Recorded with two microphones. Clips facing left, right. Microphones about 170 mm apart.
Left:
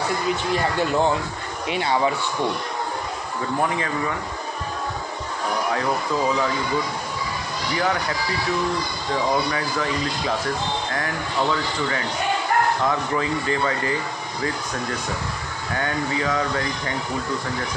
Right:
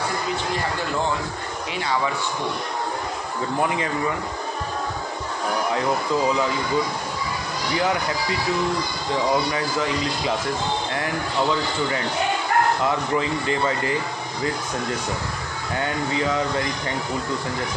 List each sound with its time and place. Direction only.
13.2 s speech: 20° right (ahead or behind)